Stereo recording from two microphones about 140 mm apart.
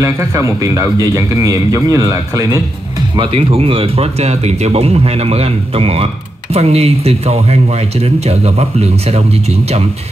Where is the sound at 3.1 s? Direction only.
40° right (ahead or behind).